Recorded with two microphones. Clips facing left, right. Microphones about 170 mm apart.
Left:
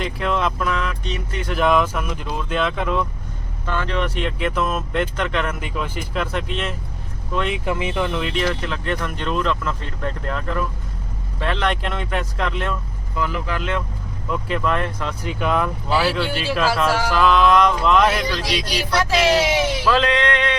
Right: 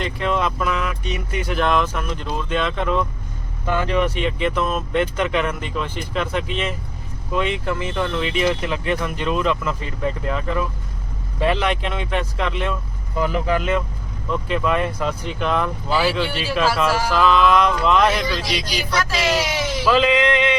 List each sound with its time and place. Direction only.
0.0 s speech: centre (ahead or behind)
1.5 s speech: 5° left (ahead or behind)
3.7 s speech: 10° right (ahead or behind)
7.6 s speech: 10° left (ahead or behind)
8.4 s speech: 10° right (ahead or behind)
13.1 s a sound: 15° right (ahead or behind)
14.3 s speech: centre (ahead or behind)
19.8 s a sound: 5° right (ahead or behind)